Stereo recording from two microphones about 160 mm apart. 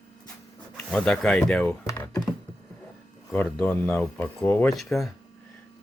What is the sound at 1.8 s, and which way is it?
Computer keyboard, 15° left (ahead or behind).